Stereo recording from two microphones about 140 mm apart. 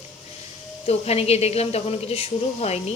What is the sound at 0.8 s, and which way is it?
A woman's voice, 45° left (ahead or behind).